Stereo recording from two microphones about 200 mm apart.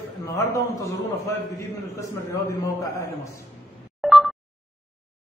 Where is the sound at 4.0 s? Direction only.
Centre (ahead or behind).